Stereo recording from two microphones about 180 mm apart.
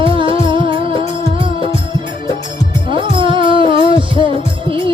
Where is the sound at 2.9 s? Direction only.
30° right (ahead or behind).